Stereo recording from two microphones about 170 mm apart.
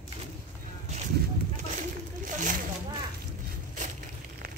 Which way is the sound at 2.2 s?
50° right (ahead or behind).